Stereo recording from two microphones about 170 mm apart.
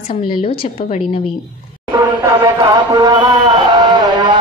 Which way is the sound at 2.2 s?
20° right (ahead or behind).